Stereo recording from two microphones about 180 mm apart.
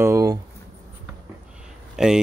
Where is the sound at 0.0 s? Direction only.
15° right (ahead or behind).